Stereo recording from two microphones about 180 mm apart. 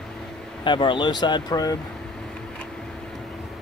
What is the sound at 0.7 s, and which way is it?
Speech, 25° left (ahead or behind).